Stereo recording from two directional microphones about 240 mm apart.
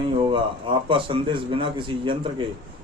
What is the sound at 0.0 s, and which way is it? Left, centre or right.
A man's voice, right.